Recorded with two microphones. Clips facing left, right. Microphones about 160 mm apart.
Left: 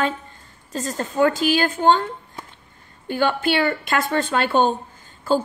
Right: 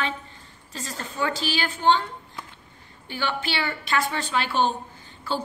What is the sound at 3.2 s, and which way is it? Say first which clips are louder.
A woman's voice: left 8 dB; 50° left (ahead or behind).